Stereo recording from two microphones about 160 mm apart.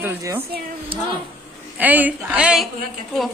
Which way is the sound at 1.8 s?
10° right (ahead or behind).